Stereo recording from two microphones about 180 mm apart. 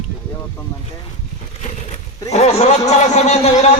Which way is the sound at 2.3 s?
35° left (ahead or behind).